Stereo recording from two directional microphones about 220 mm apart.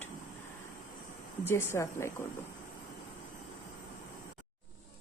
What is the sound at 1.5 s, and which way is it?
Speech, 10° left (ahead or behind).